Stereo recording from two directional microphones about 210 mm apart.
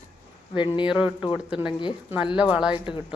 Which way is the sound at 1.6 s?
20° left (ahead or behind).